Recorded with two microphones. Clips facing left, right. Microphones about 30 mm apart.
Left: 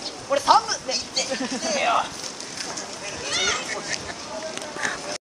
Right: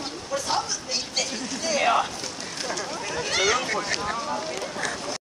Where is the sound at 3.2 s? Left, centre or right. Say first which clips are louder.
Right 1 dB; centre.